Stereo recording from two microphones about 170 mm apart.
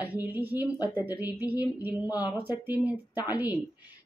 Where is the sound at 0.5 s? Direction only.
20° left (ahead or behind).